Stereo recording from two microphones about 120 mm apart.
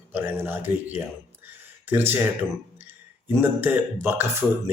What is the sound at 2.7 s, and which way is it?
Speech, 15° right (ahead or behind).